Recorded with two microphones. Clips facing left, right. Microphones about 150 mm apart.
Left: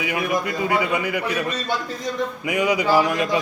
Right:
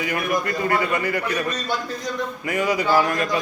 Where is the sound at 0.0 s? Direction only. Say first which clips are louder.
Even; 5° left (ahead or behind).